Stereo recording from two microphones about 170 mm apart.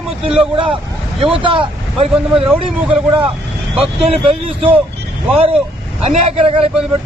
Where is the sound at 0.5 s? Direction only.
30° right (ahead or behind).